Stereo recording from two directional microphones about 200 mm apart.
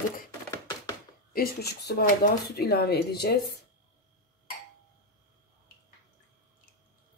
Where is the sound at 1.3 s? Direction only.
50° left (ahead or behind).